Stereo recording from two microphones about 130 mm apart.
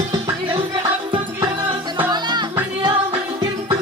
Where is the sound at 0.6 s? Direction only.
40° right (ahead or behind).